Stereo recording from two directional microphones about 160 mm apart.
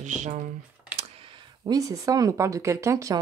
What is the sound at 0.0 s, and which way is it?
Speech, 50° right (ahead or behind).